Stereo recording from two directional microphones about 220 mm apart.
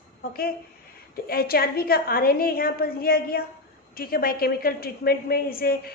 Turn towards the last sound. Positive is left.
turn(degrees=40)  # may be behind; listen again after turning